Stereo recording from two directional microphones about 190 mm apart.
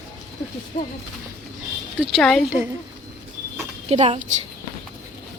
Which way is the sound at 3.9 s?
35° right (ahead or behind).